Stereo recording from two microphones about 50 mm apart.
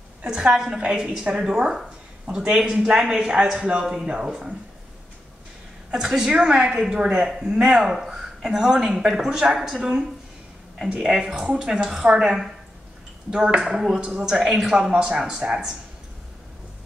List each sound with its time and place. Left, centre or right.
0.3 s a woman's voice: centre
5.9 s a woman's voice: centre